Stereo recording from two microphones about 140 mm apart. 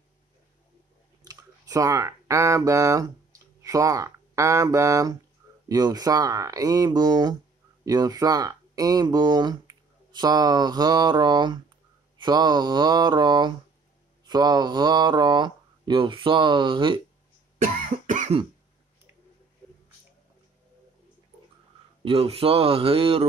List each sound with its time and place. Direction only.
1.2 s speech: 25° right (ahead or behind)
17.6 s cough: 75° right (ahead or behind)
22.0 s speech: 45° right (ahead or behind)